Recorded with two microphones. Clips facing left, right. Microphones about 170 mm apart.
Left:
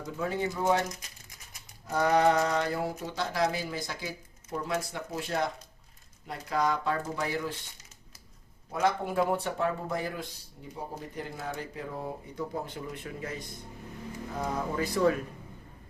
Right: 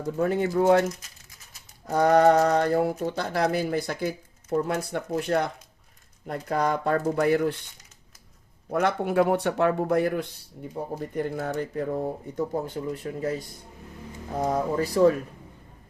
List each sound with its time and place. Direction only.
0.2 s speech: 55° right (ahead or behind)
1.9 s speech: 50° right (ahead or behind)
8.7 s speech: 70° right (ahead or behind)
11.1 s speech: 50° right (ahead or behind)
14.4 s speech: 40° right (ahead or behind)